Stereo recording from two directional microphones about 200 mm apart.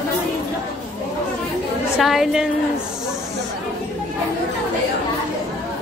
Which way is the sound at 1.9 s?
Centre (ahead or behind).